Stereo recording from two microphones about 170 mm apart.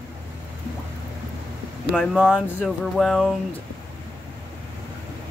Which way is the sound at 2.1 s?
5° right (ahead or behind).